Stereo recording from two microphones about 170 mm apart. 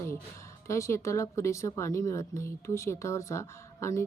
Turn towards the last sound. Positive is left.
turn(degrees=15)  # may be behind; listen again after turning